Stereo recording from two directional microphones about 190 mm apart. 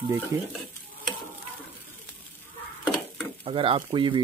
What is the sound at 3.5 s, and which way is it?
Speech, 30° right (ahead or behind).